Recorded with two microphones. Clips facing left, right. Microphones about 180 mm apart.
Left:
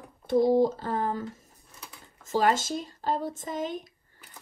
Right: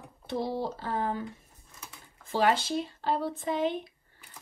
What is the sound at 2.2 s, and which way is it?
Speech, 45° left (ahead or behind).